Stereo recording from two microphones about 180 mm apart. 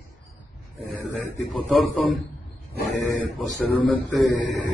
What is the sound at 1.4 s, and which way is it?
A man's voice, centre (ahead or behind).